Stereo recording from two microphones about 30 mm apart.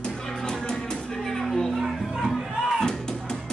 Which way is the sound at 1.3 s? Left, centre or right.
Centre.